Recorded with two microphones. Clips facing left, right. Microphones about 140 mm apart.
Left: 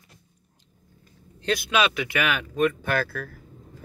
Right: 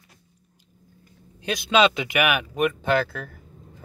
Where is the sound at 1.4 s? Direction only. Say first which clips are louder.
Right 4 dB; 20° right (ahead or behind).